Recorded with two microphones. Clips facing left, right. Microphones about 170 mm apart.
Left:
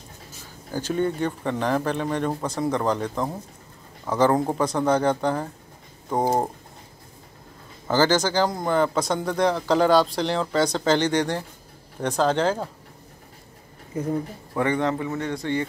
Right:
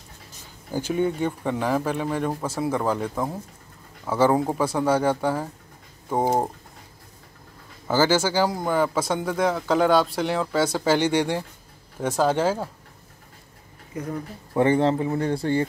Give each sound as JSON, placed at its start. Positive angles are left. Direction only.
{"t": 0.7, "sound": "speech", "side_deg": -10}
{"t": 7.9, "sound": "speech", "side_deg": -10}
{"t": 13.9, "sound": "speech", "side_deg": 25}
{"t": 14.5, "sound": "speech", "side_deg": -30}